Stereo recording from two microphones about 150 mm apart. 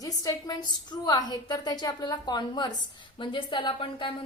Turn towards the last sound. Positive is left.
turn(degrees=35)  # may be behind; listen again after turning